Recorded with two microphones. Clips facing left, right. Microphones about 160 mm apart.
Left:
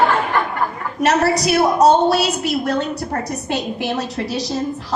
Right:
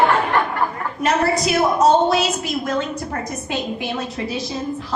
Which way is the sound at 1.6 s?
35° left (ahead or behind).